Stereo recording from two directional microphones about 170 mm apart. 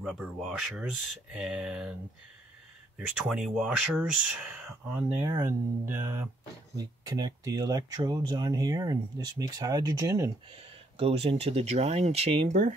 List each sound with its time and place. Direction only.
0.0 s speech: centre (ahead or behind)
3.2 s speech: 5° right (ahead or behind); by 10.3 s 20° right (ahead or behind)
10.6 s speech: 35° right (ahead or behind)